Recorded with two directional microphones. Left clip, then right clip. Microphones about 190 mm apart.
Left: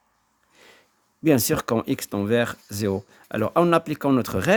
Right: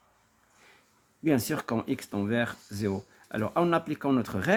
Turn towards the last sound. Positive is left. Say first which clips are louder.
# left 6 dB
turn(degrees=50)  # may be behind; listen again after turning